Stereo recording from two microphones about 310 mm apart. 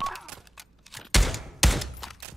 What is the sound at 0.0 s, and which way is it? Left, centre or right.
Fusillade, centre.